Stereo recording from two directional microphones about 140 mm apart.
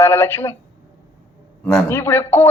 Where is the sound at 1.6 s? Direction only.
10° left (ahead or behind).